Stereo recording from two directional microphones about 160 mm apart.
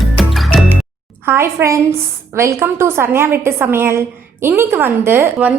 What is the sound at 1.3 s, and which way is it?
A woman's voice, 15° right (ahead or behind).